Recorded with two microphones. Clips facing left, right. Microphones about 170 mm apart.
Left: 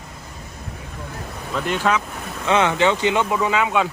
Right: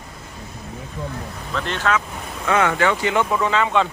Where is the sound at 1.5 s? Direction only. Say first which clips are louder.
Left 1 dB; 10° left (ahead or behind).